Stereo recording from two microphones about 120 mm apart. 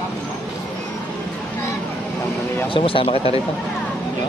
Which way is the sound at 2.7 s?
50° left (ahead or behind).